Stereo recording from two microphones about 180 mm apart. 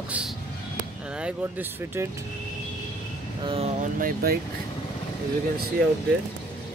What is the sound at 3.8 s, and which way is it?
Speech, 50° right (ahead or behind).